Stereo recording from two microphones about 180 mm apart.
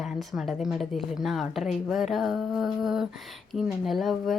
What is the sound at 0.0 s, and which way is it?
A woman's voice, centre (ahead or behind).